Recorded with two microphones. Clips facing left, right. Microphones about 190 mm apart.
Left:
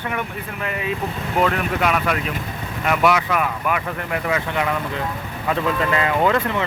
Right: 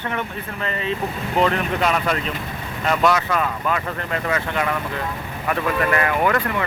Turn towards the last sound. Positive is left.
turn(degrees=20)  # may be behind; listen again after turning